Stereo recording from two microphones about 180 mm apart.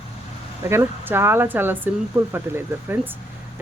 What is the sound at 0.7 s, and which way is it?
Speech, 15° right (ahead or behind).